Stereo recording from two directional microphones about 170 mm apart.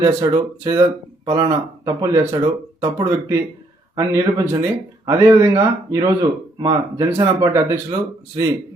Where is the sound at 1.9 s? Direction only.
15° right (ahead or behind).